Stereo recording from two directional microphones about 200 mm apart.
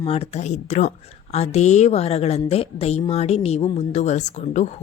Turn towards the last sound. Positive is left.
turn(degrees=35)  # may be behind; listen again after turning